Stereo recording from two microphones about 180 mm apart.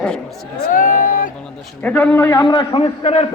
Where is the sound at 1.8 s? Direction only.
10° left (ahead or behind); by 3.2 s 35° left (ahead or behind).